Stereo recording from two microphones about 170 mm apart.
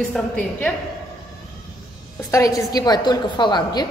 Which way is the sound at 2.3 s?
20° left (ahead or behind).